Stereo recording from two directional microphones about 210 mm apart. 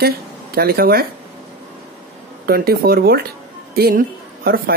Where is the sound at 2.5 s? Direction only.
45° right (ahead or behind).